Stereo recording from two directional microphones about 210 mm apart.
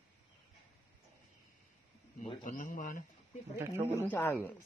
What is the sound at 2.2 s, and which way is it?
Speech, 35° left (ahead or behind).